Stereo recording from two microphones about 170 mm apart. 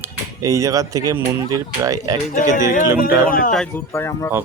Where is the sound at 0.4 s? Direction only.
20° right (ahead or behind).